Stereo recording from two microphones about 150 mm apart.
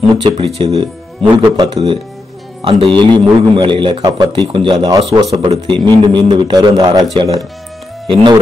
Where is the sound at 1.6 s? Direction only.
30° right (ahead or behind).